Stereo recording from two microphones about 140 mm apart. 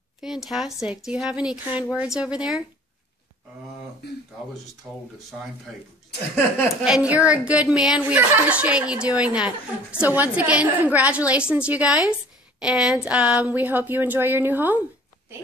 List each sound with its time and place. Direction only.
0.2 s speech: 5° right (ahead or behind)
4.9 s a woman's voice: 10° right (ahead or behind)
6.8 s a woman's voice: 5° right (ahead or behind)